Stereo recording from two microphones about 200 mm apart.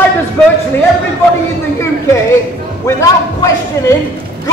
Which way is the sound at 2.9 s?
15° left (ahead or behind).